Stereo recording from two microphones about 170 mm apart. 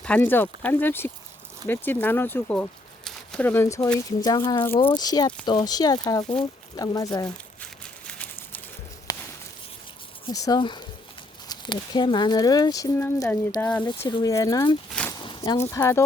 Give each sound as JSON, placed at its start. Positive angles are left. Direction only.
{"t": 0.0, "sound": "speech", "side_deg": 10}
{"t": 8.0, "sound": "a sound", "side_deg": 10}
{"t": 10.2, "sound": "speech", "side_deg": 20}
{"t": 14.1, "sound": "speech", "side_deg": 20}
{"t": 15.2, "sound": "a sound", "side_deg": 30}
{"t": 15.5, "sound": "speech", "side_deg": 15}